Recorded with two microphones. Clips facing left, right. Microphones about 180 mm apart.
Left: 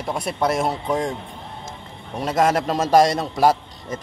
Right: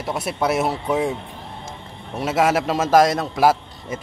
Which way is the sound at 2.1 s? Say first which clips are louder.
Even; 5° right (ahead or behind).